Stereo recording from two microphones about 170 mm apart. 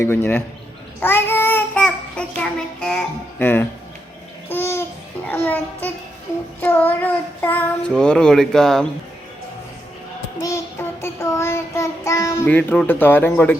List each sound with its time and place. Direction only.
0.0 s a child's voice: 15° left (ahead or behind)
0.9 s child singing: 15° left (ahead or behind)
4.4 s babbling: 15° left (ahead or behind)
5.3 s a child's voice: 10° left (ahead or behind)
10.3 s child singing: 15° left (ahead or behind)
11.0 s a child's voice: 15° left (ahead or behind)